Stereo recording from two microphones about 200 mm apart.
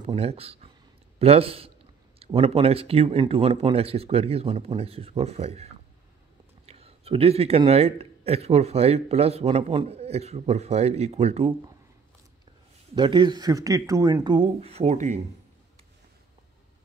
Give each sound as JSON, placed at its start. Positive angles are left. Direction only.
{"t": 0.0, "sound": "a man's voice", "side_deg": -30}
{"t": 12.9, "sound": "speech", "side_deg": -20}